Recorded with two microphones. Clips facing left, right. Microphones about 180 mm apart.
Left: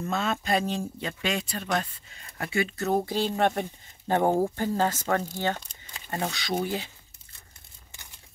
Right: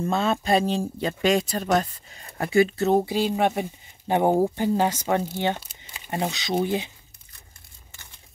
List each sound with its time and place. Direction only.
0.0 s speech: 30° right (ahead or behind)
3.1 s speech: 10° right (ahead or behind)
5.6 s crumpling: 5° right (ahead or behind)
6.1 s speech: 20° right (ahead or behind)